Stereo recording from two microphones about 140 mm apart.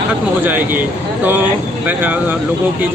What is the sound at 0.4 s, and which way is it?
A man's voice, 15° right (ahead or behind).